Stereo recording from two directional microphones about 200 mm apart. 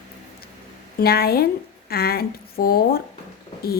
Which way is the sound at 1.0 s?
50° left (ahead or behind).